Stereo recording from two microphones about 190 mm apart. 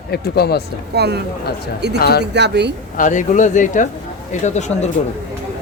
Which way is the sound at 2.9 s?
40° left (ahead or behind).